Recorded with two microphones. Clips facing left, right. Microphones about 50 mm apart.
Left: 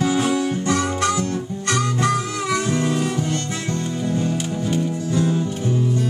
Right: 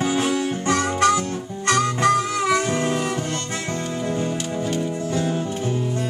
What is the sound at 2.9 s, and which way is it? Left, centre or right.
Saxophone, centre.